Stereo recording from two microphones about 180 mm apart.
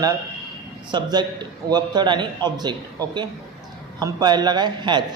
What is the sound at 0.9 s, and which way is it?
Speech, 25° right (ahead or behind).